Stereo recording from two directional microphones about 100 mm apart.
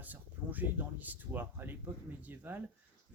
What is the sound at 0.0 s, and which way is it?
Speech, 15° right (ahead or behind).